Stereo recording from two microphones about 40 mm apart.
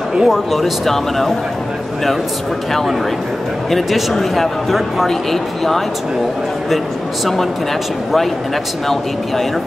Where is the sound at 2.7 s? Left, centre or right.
Centre.